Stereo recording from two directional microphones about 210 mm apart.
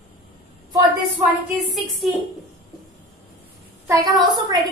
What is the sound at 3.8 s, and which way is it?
Speech, 15° right (ahead or behind).